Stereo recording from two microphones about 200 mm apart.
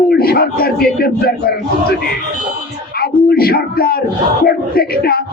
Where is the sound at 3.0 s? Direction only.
50° left (ahead or behind).